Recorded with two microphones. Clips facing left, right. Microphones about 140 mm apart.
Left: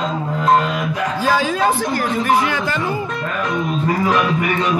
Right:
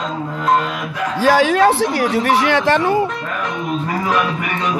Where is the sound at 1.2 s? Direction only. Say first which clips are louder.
Right 5 dB; 80° right.